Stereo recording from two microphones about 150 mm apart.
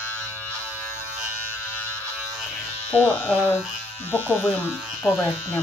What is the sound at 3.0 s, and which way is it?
Speech, 10° right (ahead or behind).